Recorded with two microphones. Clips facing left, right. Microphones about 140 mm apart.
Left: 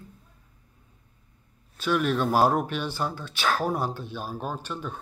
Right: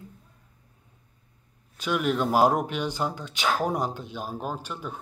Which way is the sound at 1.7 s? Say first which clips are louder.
Left 1 dB; 15° right (ahead or behind).